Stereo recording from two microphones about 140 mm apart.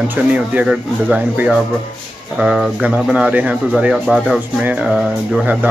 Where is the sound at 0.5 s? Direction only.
10° right (ahead or behind).